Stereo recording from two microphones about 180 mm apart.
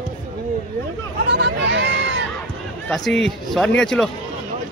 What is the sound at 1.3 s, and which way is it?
Speech, 70° right (ahead or behind).